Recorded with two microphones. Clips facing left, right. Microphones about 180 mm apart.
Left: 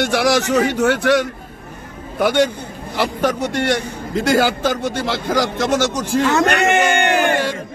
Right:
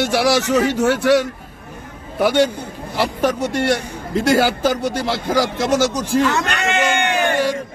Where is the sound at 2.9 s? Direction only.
5° right (ahead or behind).